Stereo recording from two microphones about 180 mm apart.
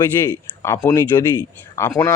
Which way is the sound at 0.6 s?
15° left (ahead or behind).